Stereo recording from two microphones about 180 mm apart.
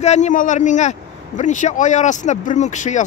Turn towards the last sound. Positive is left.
turn(degrees=40)  # may be behind; listen again after turning